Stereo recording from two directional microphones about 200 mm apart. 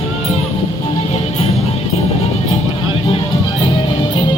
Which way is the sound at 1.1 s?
30° left (ahead or behind).